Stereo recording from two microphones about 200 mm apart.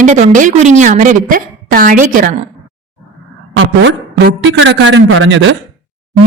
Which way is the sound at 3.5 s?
65° right (ahead or behind).